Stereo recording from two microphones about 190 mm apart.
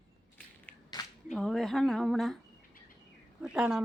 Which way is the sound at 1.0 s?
25° left (ahead or behind).